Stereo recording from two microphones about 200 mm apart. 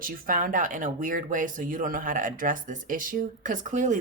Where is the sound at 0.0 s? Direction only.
45° right (ahead or behind).